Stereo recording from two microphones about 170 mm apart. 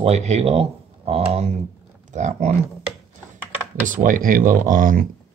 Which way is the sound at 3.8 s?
50° right (ahead or behind).